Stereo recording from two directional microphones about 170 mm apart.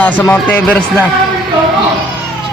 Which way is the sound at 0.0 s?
10° left (ahead or behind).